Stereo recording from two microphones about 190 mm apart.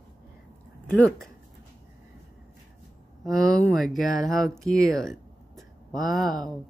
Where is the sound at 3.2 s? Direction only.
5° left (ahead or behind).